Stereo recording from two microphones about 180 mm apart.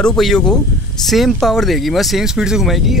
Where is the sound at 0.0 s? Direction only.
5° left (ahead or behind).